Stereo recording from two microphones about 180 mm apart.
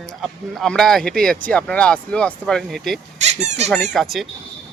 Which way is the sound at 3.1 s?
40° right (ahead or behind).